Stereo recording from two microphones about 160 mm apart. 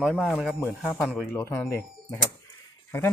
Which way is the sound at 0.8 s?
10° left (ahead or behind).